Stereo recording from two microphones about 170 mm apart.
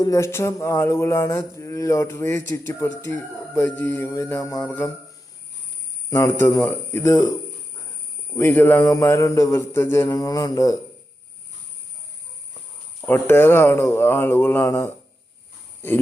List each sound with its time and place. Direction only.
0.0 s speech: 15° left (ahead or behind)
6.1 s speech: 15° left (ahead or behind)
8.4 s speech: 10° left (ahead or behind)
13.0 s speech: 15° left (ahead or behind)